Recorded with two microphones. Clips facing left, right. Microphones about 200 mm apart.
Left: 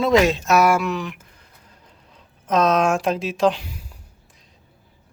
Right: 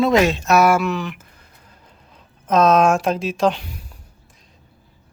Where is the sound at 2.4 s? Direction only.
50° right (ahead or behind).